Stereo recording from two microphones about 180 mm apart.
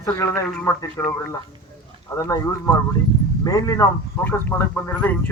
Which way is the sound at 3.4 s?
20° left (ahead or behind).